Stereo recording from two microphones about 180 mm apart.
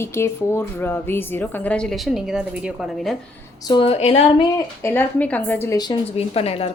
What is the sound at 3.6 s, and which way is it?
Speech, 30° left (ahead or behind).